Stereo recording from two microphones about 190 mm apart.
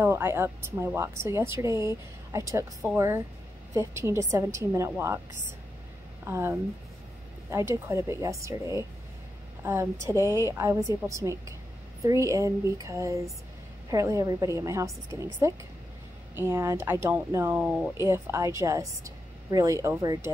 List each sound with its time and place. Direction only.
0.0 s speech: 15° right (ahead or behind)
6.2 s a woman's voice: 15° right (ahead or behind)